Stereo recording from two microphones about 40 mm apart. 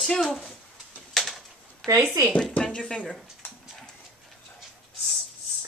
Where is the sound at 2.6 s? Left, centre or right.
Left.